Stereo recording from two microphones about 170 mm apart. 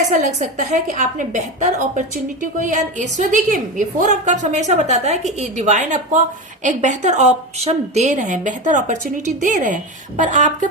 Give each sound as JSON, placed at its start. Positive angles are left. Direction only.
{"t": 0.1, "sound": "a woman's voice", "side_deg": -45}